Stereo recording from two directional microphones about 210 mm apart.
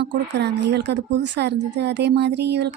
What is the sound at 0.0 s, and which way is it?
Speech, 55° right (ahead or behind).